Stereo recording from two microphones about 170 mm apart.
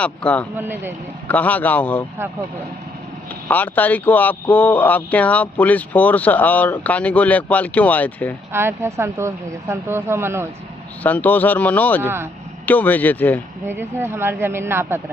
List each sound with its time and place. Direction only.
0.0 s speech: 5° left (ahead or behind)
0.6 s speech: 10° right (ahead or behind)
1.2 s speech: 10° left (ahead or behind)
3.4 s speech: 10° left (ahead or behind)
8.5 s speech: 15° right (ahead or behind)
11.0 s speech: 10° left (ahead or behind)
12.0 s speech: 15° right (ahead or behind)
12.6 s speech: 10° left (ahead or behind)
13.7 s speech: 15° right (ahead or behind)